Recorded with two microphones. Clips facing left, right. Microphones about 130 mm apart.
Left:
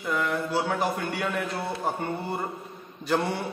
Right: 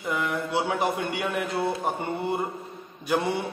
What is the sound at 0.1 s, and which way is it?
A man's voice, 20° right (ahead or behind).